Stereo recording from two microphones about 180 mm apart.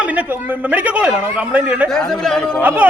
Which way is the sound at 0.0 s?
10° right (ahead or behind).